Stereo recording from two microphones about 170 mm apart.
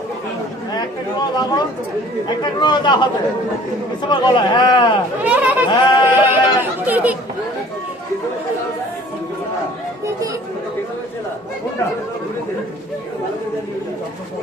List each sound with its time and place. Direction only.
1.2 s a man's voice: 25° left (ahead or behind)
4.1 s a man's voice: 25° left (ahead or behind)
5.2 s chatter: 10° right (ahead or behind)
5.7 s a man's voice: 25° left (ahead or behind)
6.1 s chatter: 10° right (ahead or behind)